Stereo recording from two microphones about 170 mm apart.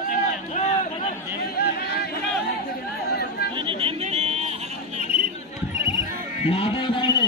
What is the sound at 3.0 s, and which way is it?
Chatter, 70° left (ahead or behind).